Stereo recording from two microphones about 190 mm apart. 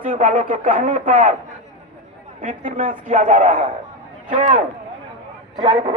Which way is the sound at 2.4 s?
45° right (ahead or behind).